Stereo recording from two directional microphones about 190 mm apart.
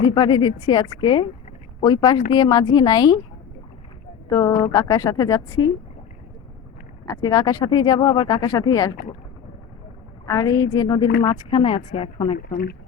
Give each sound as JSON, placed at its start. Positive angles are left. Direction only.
{"t": 0.0, "sound": "speech", "side_deg": 25}
{"t": 4.3, "sound": "speech", "side_deg": 20}
{"t": 7.0, "sound": "speech", "side_deg": 20}
{"t": 10.2, "sound": "speech", "side_deg": 20}
{"t": 12.4, "sound": "speech", "side_deg": 50}